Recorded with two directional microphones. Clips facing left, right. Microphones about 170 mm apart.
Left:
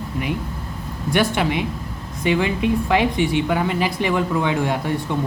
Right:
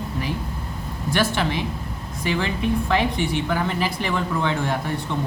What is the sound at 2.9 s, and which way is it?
Speech, 15° left (ahead or behind).